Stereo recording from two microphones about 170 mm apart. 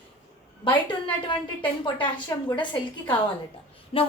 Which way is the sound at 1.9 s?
30° left (ahead or behind).